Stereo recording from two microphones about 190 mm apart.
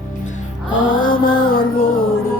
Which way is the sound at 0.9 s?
45° left (ahead or behind).